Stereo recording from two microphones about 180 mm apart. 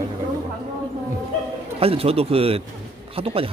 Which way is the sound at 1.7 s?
30° right (ahead or behind).